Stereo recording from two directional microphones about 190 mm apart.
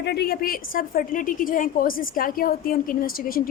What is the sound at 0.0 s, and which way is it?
A woman's voice, 60° left (ahead or behind).